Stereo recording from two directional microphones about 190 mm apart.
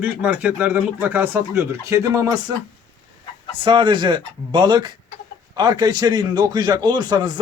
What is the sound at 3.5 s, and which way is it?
A man's voice, 25° right (ahead or behind).